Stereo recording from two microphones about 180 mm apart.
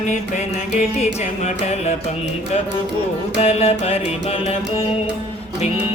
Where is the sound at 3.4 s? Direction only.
35° left (ahead or behind).